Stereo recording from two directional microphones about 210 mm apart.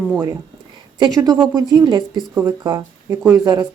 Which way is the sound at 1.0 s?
20° right (ahead or behind).